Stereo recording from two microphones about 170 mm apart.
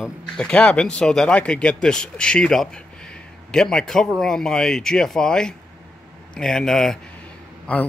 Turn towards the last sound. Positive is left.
turn(degrees=10)  # may be behind; listen again after turning